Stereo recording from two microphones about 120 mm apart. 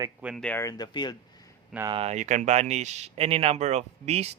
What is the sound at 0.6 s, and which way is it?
Speech, 30° left (ahead or behind).